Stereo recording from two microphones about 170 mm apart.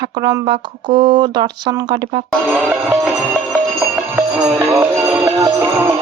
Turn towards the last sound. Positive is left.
turn(degrees=-15)  # may be behind; listen again after turning